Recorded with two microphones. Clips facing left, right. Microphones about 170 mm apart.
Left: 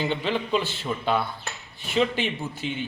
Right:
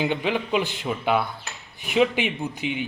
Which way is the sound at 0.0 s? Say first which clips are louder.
Right 2 dB; 15° right (ahead or behind).